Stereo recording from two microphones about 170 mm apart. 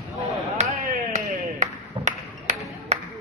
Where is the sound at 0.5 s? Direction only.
45° right (ahead or behind).